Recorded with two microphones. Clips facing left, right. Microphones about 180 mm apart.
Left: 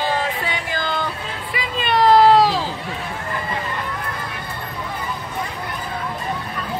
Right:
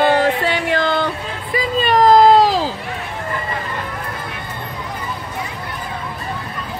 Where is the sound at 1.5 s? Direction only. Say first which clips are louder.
Right 5 dB; 40° right (ahead or behind).